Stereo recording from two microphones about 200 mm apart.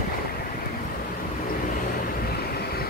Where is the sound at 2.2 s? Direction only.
50° left (ahead or behind).